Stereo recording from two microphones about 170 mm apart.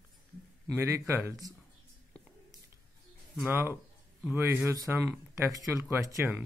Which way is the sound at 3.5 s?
10° right (ahead or behind).